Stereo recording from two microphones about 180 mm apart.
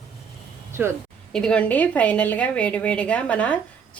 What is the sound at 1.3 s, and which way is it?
A woman's voice, 5° left (ahead or behind).